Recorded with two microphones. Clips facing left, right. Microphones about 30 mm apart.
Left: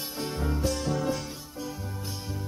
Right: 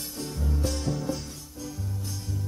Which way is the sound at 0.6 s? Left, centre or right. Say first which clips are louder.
Even; centre.